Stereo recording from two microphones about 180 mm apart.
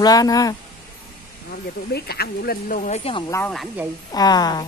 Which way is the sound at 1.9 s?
60° left (ahead or behind).